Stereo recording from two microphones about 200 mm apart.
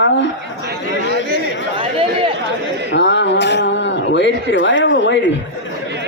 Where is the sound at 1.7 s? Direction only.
25° right (ahead or behind).